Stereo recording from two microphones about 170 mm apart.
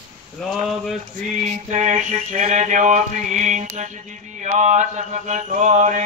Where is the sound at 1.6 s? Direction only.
45° right (ahead or behind).